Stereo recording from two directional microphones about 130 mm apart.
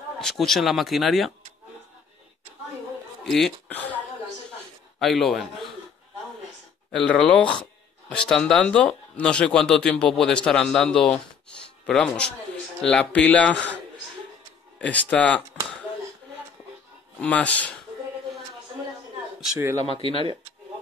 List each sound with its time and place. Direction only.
0.2 s speech: centre (ahead or behind)
3.3 s speech: 5° left (ahead or behind)
5.0 s speech: centre (ahead or behind)
6.9 s speech: 5° left (ahead or behind)
14.8 s speech: 10° left (ahead or behind)
17.2 s speech: 10° left (ahead or behind)
19.8 s speech: 45° left (ahead or behind)